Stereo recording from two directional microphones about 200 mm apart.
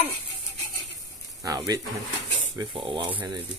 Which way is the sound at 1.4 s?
15° right (ahead or behind).